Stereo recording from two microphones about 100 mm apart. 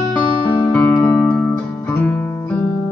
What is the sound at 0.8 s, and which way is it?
Music, 25° left (ahead or behind).